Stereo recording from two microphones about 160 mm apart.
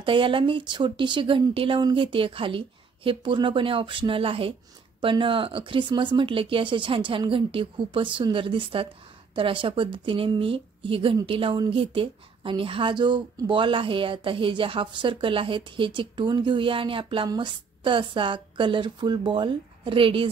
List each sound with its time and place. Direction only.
0.0 s a woman's voice: 30° right (ahead or behind)